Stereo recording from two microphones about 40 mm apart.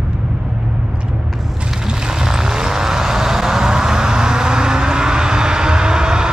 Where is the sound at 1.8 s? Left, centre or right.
Centre.